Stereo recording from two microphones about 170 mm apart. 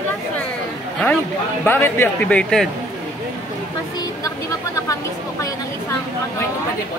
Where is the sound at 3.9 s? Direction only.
20° left (ahead or behind).